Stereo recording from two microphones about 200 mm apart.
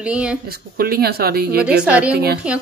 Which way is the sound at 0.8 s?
50° right (ahead or behind).